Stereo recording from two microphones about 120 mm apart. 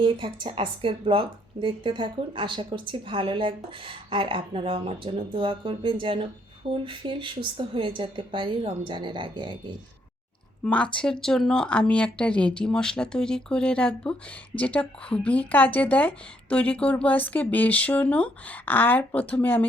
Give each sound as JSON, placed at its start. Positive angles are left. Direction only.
{"t": 0.0, "sound": "a woman's voice", "side_deg": -45}
{"t": 10.6, "sound": "speech", "side_deg": 10}